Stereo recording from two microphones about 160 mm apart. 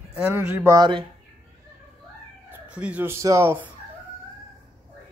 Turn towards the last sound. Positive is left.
turn(degrees=-15)  # may be behind; listen again after turning